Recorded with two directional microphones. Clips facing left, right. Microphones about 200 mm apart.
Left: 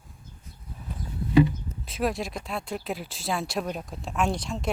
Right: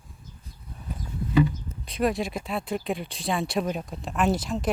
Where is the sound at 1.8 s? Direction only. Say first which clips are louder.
Right 3 dB; centre (ahead or behind).